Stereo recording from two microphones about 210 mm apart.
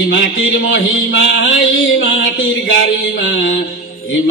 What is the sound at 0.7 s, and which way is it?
Mantra, 65° left (ahead or behind).